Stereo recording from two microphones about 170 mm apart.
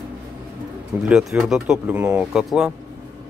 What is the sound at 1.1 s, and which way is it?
Speech, 5° right (ahead or behind).